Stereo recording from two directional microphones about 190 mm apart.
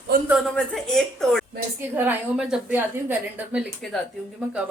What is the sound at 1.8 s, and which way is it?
A woman's voice, 10° right (ahead or behind).